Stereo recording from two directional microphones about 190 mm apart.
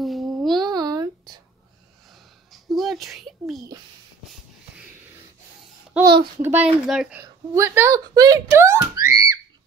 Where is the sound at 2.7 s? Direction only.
Centre (ahead or behind).